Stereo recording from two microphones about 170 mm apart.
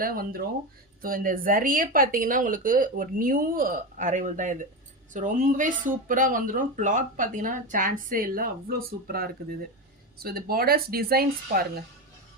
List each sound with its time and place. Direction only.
0.0 s speech: 55° right (ahead or behind)